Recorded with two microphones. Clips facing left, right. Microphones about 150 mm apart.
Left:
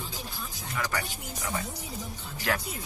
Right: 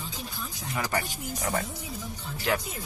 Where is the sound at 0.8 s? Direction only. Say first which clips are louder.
Right 2 dB; 30° right (ahead or behind).